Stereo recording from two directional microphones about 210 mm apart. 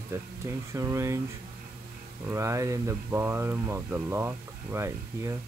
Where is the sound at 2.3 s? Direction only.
15° right (ahead or behind).